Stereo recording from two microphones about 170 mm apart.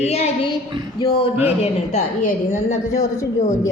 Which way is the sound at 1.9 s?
45° left (ahead or behind).